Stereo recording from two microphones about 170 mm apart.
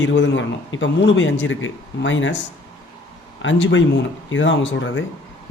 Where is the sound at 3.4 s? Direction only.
90° left.